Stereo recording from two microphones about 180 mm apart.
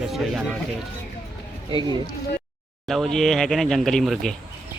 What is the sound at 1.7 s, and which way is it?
Speech, 25° right (ahead or behind).